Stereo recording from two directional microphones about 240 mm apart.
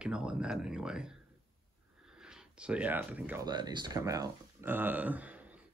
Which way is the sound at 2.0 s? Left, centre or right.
Centre.